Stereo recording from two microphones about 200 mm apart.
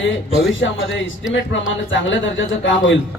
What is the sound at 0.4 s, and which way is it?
A man's voice, 65° left (ahead or behind).